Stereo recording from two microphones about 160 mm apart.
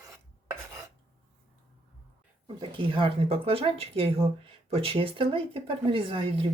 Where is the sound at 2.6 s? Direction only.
30° right (ahead or behind).